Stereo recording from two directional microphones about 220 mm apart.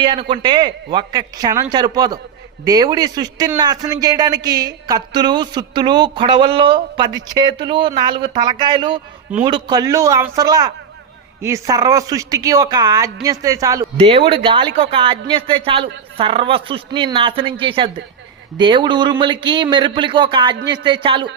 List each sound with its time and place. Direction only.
0.0 s a woman's voice: 20° right (ahead or behind)